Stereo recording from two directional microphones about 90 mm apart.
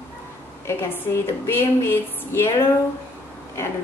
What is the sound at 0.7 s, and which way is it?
A woman's voice, 25° left (ahead or behind).